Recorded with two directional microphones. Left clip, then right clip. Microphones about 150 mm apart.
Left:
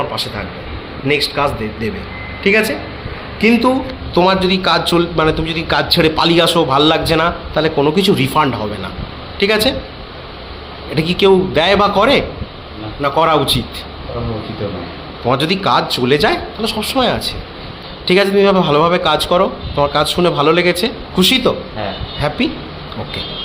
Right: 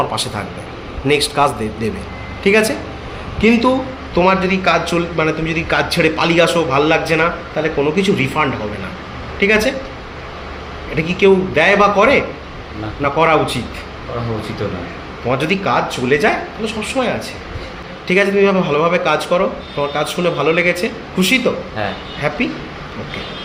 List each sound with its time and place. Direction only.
1.0 s a man's voice: 20° right (ahead or behind)
3.4 s speech: 10° left (ahead or behind)
7.5 s speech: 35° left (ahead or behind)
10.9 s speech: 30° left (ahead or behind)
15.3 s speech: 25° left (ahead or behind)